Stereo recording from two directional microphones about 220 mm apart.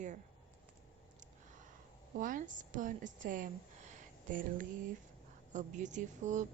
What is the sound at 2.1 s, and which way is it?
Speech, 35° right (ahead or behind).